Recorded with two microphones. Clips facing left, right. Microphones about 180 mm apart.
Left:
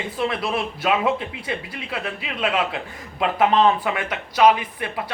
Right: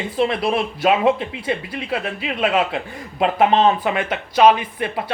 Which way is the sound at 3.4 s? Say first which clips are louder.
Right 1 dB; 25° right (ahead or behind).